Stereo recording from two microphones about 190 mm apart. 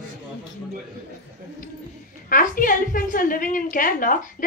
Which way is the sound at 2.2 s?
45° left (ahead or behind).